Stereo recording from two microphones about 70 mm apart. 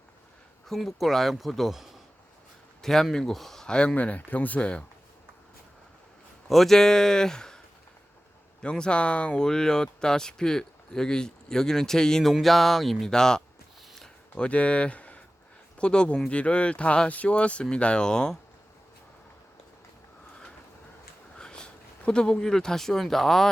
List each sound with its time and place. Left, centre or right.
0.7 s speech: centre
2.8 s speech: centre
6.5 s speech: centre
8.6 s speech: centre
21.3 s speech: centre